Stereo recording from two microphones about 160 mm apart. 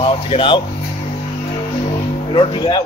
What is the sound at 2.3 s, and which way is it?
Speech, 30° left (ahead or behind).